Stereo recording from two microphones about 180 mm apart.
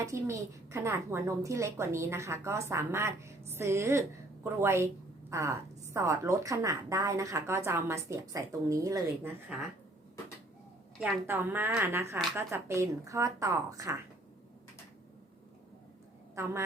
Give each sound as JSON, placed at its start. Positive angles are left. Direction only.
{"t": 0.0, "sound": "a woman's voice", "side_deg": -15}
{"t": 11.3, "sound": "a woman's voice", "side_deg": -10}
{"t": 16.3, "sound": "a woman's voice", "side_deg": -15}